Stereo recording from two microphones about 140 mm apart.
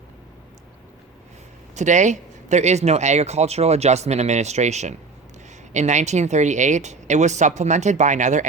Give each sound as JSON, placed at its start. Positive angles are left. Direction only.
{"t": 1.7, "sound": "speech", "side_deg": -60}